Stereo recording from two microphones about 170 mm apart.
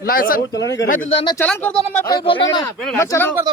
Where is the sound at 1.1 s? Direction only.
25° left (ahead or behind).